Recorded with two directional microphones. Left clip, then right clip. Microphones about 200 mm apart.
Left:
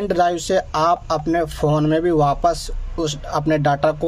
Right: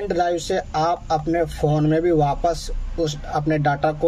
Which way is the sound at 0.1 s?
25° left (ahead or behind).